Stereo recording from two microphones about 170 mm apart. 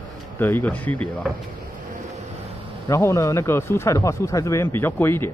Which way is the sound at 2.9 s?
20° left (ahead or behind).